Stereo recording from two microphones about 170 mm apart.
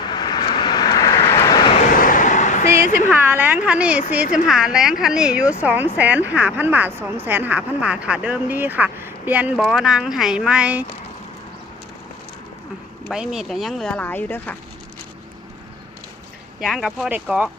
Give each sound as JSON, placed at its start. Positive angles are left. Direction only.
{"t": 0.1, "sound": "vehicle", "side_deg": 25}
{"t": 1.9, "sound": "a sound", "side_deg": 55}
{"t": 3.1, "sound": "a sound", "side_deg": -10}
{"t": 4.1, "sound": "speech", "side_deg": -10}
{"t": 13.1, "sound": "speech", "side_deg": -5}
{"t": 16.6, "sound": "speech", "side_deg": 0}